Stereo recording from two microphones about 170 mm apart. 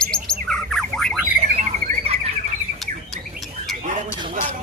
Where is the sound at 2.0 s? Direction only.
35° right (ahead or behind).